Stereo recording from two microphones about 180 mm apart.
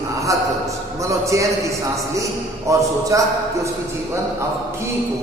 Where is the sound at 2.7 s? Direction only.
15° right (ahead or behind).